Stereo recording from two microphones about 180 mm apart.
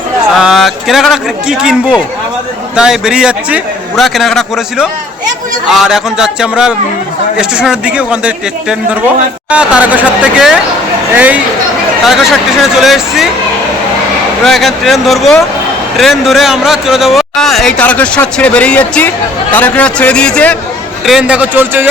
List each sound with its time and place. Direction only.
0.3 s speech: centre (ahead or behind)
9.5 s speech: 5° right (ahead or behind)
14.4 s speech: centre (ahead or behind)
21.1 s speech: 5° right (ahead or behind)